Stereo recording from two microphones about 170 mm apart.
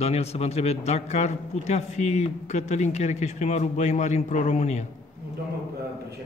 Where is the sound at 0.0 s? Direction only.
40° left (ahead or behind).